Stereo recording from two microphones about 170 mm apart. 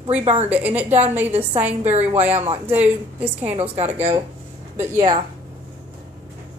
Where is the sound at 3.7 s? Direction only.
40° right (ahead or behind).